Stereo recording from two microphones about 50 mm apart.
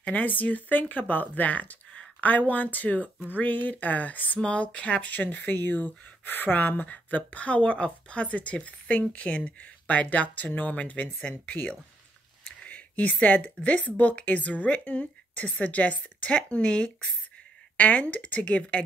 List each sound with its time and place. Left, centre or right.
0.0 s speech: left
12.6 s a sound: left
13.6 s speech: left